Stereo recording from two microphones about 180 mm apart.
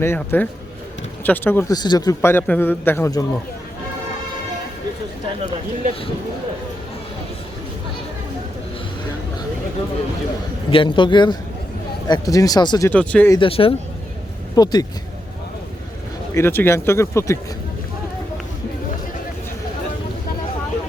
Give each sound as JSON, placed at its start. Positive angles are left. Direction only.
{"t": 0.0, "sound": "a man's voice", "side_deg": 10}
{"t": 10.7, "sound": "speech", "side_deg": 30}
{"t": 12.9, "sound": "a man's voice", "side_deg": 5}
{"t": 13.3, "sound": "speech", "side_deg": 30}
{"t": 16.3, "sound": "a man's voice", "side_deg": 15}